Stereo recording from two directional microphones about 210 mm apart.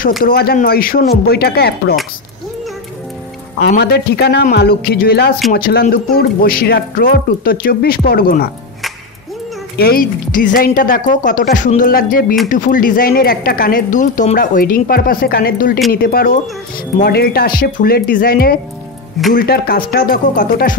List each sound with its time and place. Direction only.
0.2 s speech: 45° left (ahead or behind)
3.6 s speech: 50° left (ahead or behind)
9.8 s a woman's voice: 45° left (ahead or behind)